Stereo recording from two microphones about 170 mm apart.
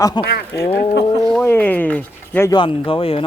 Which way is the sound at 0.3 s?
70° left (ahead or behind).